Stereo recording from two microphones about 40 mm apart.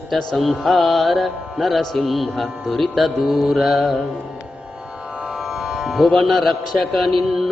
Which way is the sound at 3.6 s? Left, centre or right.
Centre.